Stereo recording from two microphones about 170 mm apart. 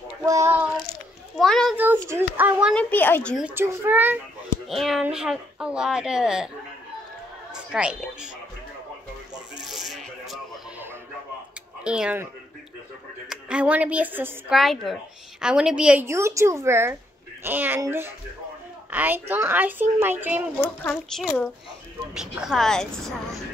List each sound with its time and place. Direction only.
0.2 s child singing: 15° right (ahead or behind)
1.4 s a sound: centre (ahead or behind)
1.8 s a sound: 10° right (ahead or behind)
2.7 s speech: 10° left (ahead or behind)
3.3 s a child's voice: 10° right (ahead or behind)
4.6 s speech: centre (ahead or behind)
7.7 s speech: 5° right (ahead or behind)
9.7 s music: centre (ahead or behind)
11.8 s a child's voice: 5° right (ahead or behind)
13.3 s a child's voice: 5° right (ahead or behind)
20.8 s speech: 5° left (ahead or behind)